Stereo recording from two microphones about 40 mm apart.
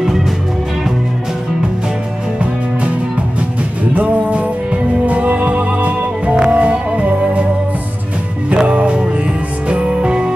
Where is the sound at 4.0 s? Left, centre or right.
Right.